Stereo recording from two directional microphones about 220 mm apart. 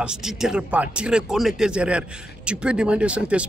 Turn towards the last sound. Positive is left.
turn(degrees=-5)  # may be behind; listen again after turning